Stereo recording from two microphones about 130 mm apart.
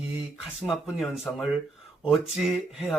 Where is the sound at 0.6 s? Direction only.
Centre (ahead or behind).